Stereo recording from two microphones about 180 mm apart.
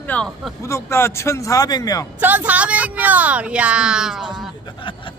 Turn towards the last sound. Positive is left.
turn(degrees=-5)  # may be behind; listen again after turning